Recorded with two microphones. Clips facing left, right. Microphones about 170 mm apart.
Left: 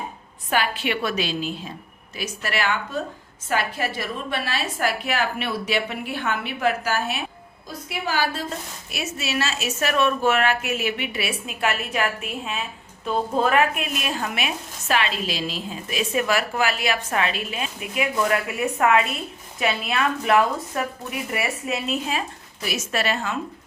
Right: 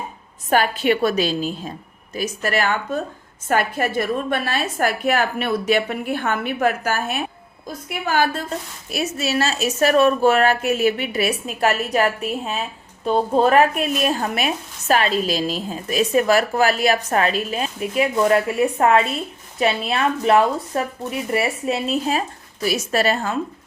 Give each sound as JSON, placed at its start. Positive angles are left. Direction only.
{"t": 0.5, "sound": "a woman's voice", "side_deg": -40}
{"t": 8.9, "sound": "speech", "side_deg": -40}